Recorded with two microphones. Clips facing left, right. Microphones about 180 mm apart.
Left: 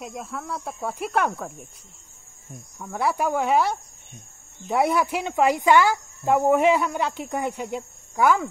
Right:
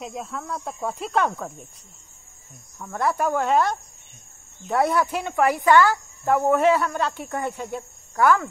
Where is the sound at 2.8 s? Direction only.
10° left (ahead or behind).